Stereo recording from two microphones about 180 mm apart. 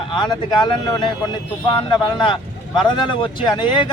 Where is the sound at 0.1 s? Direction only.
25° left (ahead or behind).